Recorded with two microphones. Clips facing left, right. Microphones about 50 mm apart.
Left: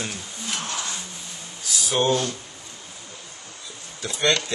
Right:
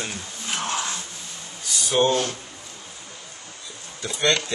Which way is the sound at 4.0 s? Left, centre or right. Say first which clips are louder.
Even; centre.